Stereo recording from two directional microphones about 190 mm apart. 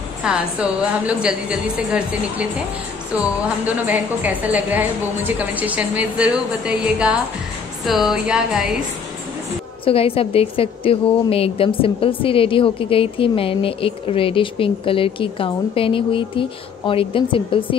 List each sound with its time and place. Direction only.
0.2 s a woman's voice: 5° right (ahead or behind)
9.8 s a woman's voice: 30° left (ahead or behind)